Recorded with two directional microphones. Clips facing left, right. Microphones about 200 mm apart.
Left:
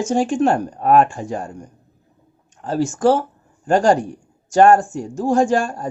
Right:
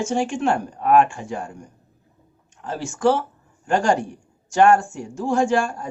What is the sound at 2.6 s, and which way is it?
Speech, 40° left (ahead or behind).